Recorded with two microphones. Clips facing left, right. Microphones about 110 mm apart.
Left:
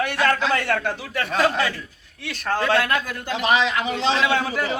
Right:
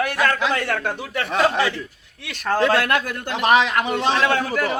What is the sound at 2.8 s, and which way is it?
A man's voice, 65° right (ahead or behind).